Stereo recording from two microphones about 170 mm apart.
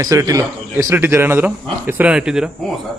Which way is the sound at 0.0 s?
20° right (ahead or behind).